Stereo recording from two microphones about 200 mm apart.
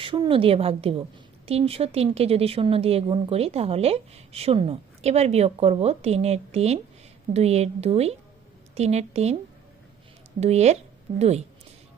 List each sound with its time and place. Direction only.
0.0 s a woman's voice: 25° right (ahead or behind)
10.4 s speech: 35° right (ahead or behind)